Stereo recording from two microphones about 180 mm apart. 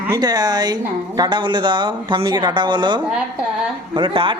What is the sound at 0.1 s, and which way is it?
Speech, 20° right (ahead or behind).